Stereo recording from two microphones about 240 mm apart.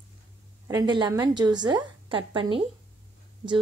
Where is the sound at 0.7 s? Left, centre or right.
Centre.